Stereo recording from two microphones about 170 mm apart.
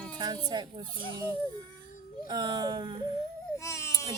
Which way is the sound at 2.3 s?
25° right (ahead or behind).